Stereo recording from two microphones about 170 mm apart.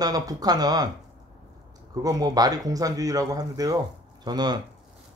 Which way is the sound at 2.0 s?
20° right (ahead or behind).